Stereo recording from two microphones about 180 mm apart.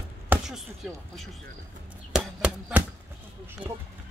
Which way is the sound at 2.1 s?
5° right (ahead or behind).